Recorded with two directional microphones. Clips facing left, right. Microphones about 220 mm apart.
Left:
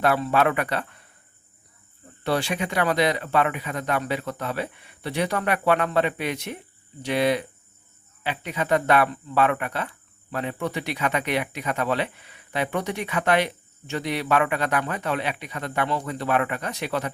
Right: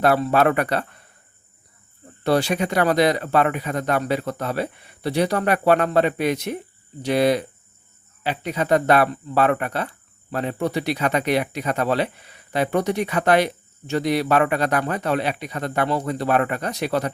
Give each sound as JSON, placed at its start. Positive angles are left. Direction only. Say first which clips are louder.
{"t": 0.0, "sound": "speech", "louder": "right 4 dB", "side_deg": -40}
{"t": 2.2, "sound": "speech", "louder": "right 5 dB", "side_deg": -40}